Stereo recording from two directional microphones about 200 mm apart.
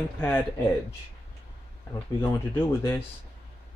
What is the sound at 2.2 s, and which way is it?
Speech, 20° left (ahead or behind).